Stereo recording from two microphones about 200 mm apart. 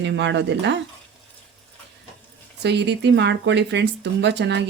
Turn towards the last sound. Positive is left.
turn(degrees=-60)  # may be behind; listen again after turning